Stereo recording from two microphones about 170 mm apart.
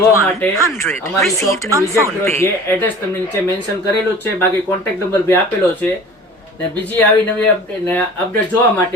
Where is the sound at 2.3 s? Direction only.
10° left (ahead or behind).